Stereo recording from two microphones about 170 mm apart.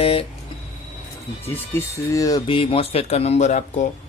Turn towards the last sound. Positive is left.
turn(degrees=45)  # may be behind; listen again after turning